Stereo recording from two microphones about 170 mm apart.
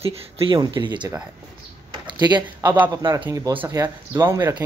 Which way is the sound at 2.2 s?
25° right (ahead or behind).